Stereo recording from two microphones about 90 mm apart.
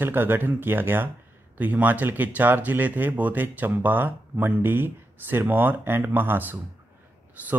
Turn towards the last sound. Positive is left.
turn(degrees=-20)  # may be behind; listen again after turning